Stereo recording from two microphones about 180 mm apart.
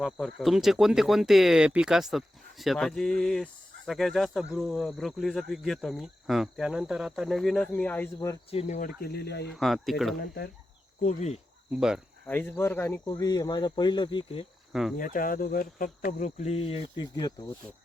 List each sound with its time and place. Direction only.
0.0 s speech: centre (ahead or behind)
8.4 s speech: 35° left (ahead or behind)
9.0 s speech: 60° left (ahead or behind)
9.6 s speech: centre (ahead or behind)
10.2 s speech: 60° left (ahead or behind)
11.0 s speech: 40° left (ahead or behind)
11.7 s speech: 5° right (ahead or behind)
12.2 s speech: 10° left (ahead or behind); by 14.4 s 25° left (ahead or behind)
14.7 s cricket: centre (ahead or behind)
14.9 s speech: 50° left (ahead or behind); by 17.3 s 25° left (ahead or behind)